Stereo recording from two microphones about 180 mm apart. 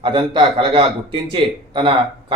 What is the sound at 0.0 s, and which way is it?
A man's voice, 25° right (ahead or behind).